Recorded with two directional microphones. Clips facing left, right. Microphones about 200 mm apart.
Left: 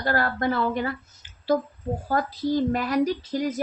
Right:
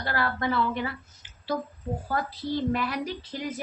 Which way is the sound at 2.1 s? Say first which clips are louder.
Left 6 dB; 45° left (ahead or behind).